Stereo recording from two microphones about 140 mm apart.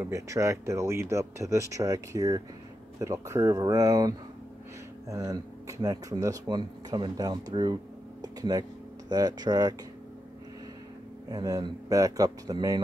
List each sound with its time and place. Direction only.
0.0 s speech: 20° right (ahead or behind)
11.2 s speech: 25° right (ahead or behind)